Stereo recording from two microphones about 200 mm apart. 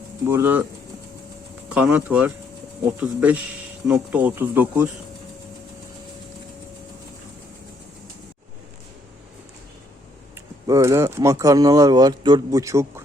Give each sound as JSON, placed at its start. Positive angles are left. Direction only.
{"t": 0.3, "sound": "speech", "side_deg": -10}
{"t": 1.7, "sound": "speech", "side_deg": -5}
{"t": 10.7, "sound": "speech", "side_deg": -15}